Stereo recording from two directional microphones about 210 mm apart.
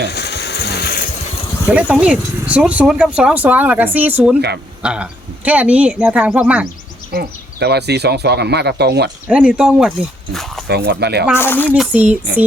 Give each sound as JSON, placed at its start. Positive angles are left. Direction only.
{"t": 0.1, "sound": "a sound", "side_deg": 50}
{"t": 1.7, "sound": "speech", "side_deg": -5}
{"t": 4.4, "sound": "speech", "side_deg": -50}
{"t": 4.8, "sound": "speech", "side_deg": -5}
{"t": 7.1, "sound": "speech", "side_deg": -50}
{"t": 9.2, "sound": "speech", "side_deg": -5}
{"t": 10.7, "sound": "speech", "side_deg": -50}
{"t": 11.3, "sound": "speech", "side_deg": 10}
{"t": 11.7, "sound": "speech", "side_deg": -5}